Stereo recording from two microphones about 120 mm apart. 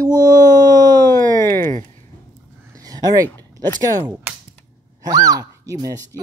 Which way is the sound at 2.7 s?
30° right (ahead or behind).